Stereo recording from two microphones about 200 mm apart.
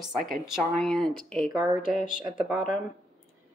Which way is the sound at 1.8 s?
40° left (ahead or behind).